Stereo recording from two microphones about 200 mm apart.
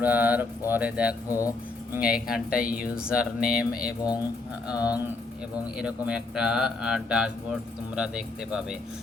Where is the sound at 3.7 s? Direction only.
50° left (ahead or behind).